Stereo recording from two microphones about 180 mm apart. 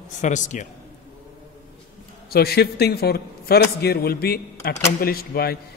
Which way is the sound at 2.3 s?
60° left (ahead or behind).